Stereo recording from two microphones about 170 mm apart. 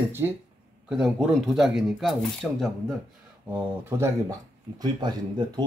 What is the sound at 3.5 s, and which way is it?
Speech, 15° right (ahead or behind).